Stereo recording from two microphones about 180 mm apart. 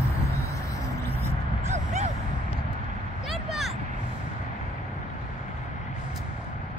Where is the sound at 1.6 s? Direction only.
40° right (ahead or behind).